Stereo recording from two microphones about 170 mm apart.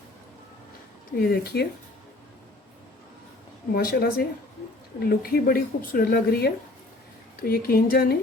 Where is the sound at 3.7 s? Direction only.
65° left (ahead or behind).